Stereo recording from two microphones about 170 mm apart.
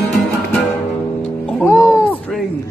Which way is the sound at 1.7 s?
20° left (ahead or behind).